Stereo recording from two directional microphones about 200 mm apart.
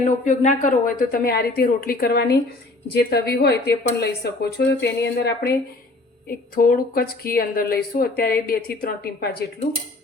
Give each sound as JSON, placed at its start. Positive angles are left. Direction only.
{"t": 0.3, "sound": "speech", "side_deg": 40}
{"t": 6.6, "sound": "speech", "side_deg": 45}